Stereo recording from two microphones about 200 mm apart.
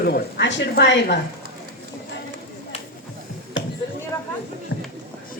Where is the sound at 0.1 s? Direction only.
60° left (ahead or behind).